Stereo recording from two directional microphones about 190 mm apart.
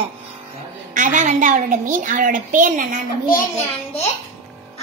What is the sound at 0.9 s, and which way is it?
A woman's voice, 40° right (ahead or behind).